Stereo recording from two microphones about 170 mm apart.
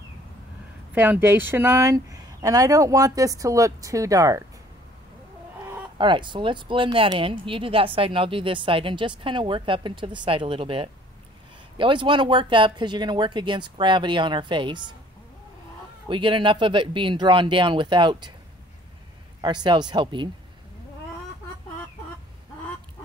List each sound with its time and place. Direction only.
0.9 s speech: 10° right (ahead or behind)
5.9 s speech: 30° right (ahead or behind)
16.1 s speech: 30° right (ahead or behind)
19.4 s speech: 25° right (ahead or behind)